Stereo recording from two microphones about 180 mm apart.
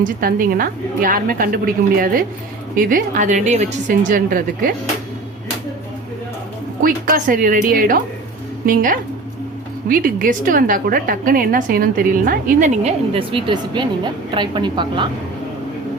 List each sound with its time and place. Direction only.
0.0 s a woman's voice: 50° right (ahead or behind)
6.8 s a woman's voice: 50° right (ahead or behind); by 15.1 s 25° right (ahead or behind)